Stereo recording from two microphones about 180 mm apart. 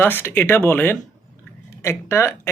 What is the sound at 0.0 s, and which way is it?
Speech, 10° left (ahead or behind).